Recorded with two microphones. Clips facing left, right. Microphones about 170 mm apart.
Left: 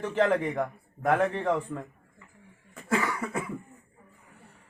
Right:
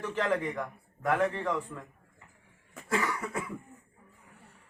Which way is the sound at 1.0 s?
35° left (ahead or behind).